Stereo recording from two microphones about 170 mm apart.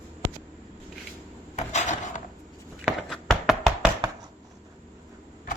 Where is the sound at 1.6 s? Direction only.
45° left (ahead or behind).